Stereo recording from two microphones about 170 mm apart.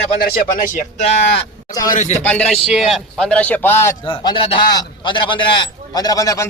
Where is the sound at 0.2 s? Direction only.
55° left (ahead or behind).